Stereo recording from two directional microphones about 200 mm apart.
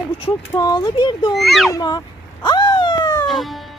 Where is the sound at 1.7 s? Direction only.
20° left (ahead or behind).